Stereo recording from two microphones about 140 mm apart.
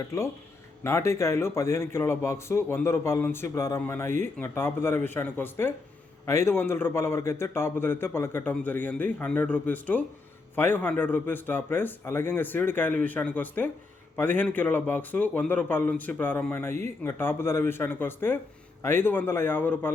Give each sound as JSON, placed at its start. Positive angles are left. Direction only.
{"t": 0.1, "sound": "a man's voice", "side_deg": 20}